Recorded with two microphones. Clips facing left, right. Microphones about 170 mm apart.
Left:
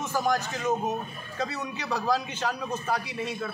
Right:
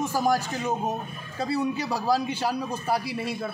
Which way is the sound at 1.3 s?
30° right (ahead or behind).